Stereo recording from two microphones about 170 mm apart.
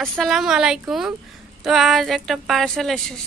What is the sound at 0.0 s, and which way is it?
A woman's voice, centre (ahead or behind).